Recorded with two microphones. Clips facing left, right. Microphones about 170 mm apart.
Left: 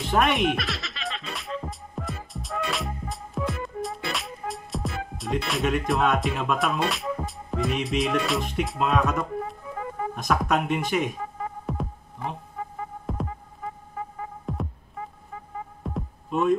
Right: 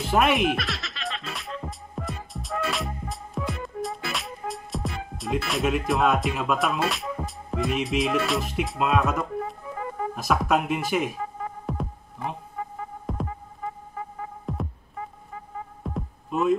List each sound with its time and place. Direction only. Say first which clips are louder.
0.0 s music: right 1 dB; 5° right (ahead or behind)
10.1 s speech: right 1 dB; 5° right (ahead or behind)
11.6 s throbbing: even; centre (ahead or behind)
13.0 s music: even; centre (ahead or behind)
14.5 s music: even; centre (ahead or behind)
15.8 s hum: right 1 dB; centre (ahead or behind)